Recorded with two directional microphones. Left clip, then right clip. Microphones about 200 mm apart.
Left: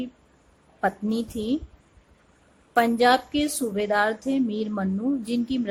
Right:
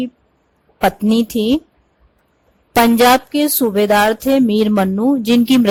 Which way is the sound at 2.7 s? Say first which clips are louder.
Right 9 dB; 40° right (ahead or behind).